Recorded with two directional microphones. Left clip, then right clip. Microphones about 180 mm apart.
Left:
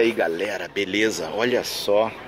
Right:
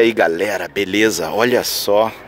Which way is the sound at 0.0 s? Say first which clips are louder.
Right 7 dB; 25° right (ahead or behind).